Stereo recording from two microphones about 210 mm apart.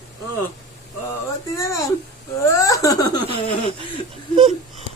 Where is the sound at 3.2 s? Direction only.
25° right (ahead or behind).